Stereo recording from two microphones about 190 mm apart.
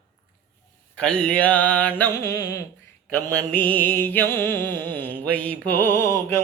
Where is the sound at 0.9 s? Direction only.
5° left (ahead or behind).